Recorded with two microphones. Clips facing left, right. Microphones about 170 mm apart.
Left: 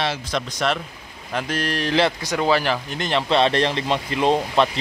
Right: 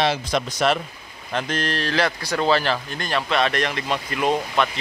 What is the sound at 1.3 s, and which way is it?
Speech, 10° left (ahead or behind).